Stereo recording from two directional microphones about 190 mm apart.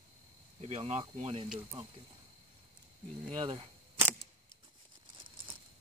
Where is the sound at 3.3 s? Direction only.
25° right (ahead or behind).